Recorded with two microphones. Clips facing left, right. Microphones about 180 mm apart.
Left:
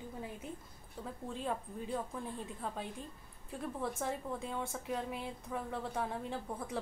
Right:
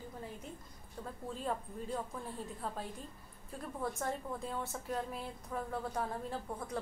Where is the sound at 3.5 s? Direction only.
Centre (ahead or behind).